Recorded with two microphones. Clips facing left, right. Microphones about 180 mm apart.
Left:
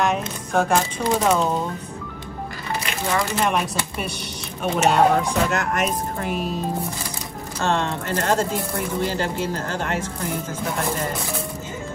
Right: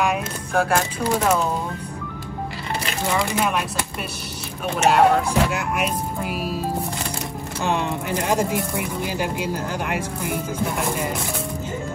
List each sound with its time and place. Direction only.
0.0 s speech: 10° right (ahead or behind)
3.1 s speech: 5° right (ahead or behind)
4.8 s speech: centre (ahead or behind)
7.6 s speech: 15° right (ahead or behind)